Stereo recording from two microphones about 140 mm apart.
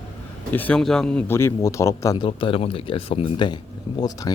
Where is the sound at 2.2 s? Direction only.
40° left (ahead or behind).